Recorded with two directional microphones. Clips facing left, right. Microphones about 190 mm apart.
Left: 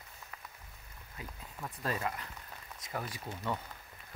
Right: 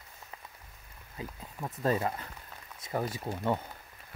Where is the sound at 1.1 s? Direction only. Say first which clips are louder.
Right 5 dB; 30° right (ahead or behind).